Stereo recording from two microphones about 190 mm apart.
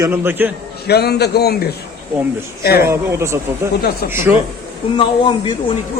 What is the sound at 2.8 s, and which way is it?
Speech, 15° right (ahead or behind).